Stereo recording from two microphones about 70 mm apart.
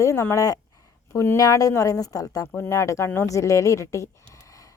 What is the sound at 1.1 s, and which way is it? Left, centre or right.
Speech, left.